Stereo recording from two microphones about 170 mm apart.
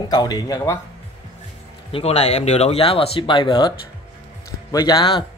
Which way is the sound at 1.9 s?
35° left (ahead or behind).